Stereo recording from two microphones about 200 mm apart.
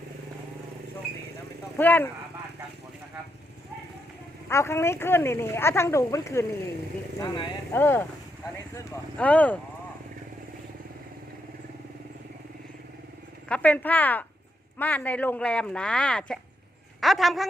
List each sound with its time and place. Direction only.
1.8 s a woman's voice: 10° left (ahead or behind)
4.4 s a woman's voice: 10° left (ahead or behind)
7.7 s a woman's voice: 10° left (ahead or behind)
13.5 s a woman's voice: 5° left (ahead or behind)